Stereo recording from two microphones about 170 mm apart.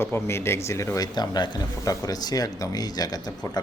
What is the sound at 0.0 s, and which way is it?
Speech, 15° left (ahead or behind).